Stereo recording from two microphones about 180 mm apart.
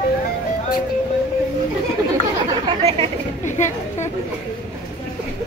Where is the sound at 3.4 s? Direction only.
40° left (ahead or behind).